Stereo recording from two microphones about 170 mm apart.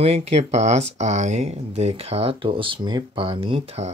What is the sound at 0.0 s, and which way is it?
Speech, 40° right (ahead or behind).